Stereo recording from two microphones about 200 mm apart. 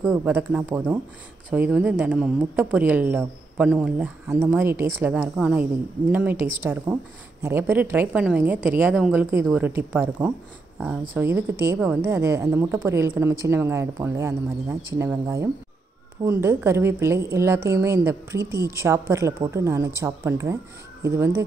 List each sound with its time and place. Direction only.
0.1 s a woman's voice: 10° right (ahead or behind)